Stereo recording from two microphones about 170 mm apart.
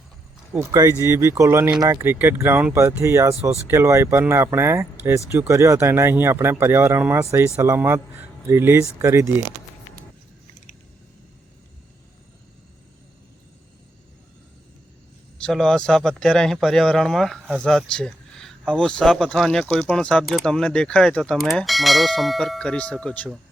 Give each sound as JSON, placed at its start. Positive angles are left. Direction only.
{"t": 0.5, "sound": "speech", "side_deg": -20}
{"t": 15.4, "sound": "speech", "side_deg": 5}